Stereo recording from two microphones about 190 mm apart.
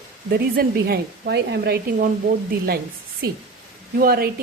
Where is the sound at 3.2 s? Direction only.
55° right (ahead or behind).